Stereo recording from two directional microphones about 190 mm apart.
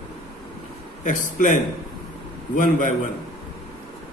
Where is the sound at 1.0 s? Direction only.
40° left (ahead or behind).